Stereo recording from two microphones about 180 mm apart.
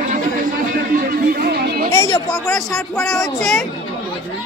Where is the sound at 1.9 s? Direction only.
15° left (ahead or behind).